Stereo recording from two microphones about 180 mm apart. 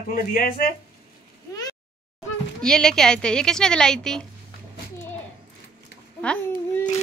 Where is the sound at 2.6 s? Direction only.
5° left (ahead or behind).